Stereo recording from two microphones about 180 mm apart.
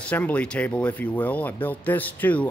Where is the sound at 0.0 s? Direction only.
10° left (ahead or behind).